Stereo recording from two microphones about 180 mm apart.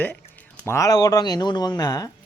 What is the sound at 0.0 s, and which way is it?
A man's voice, 10° left (ahead or behind).